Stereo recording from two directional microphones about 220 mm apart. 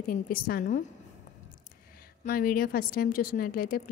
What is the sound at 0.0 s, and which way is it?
Speech, 40° left (ahead or behind).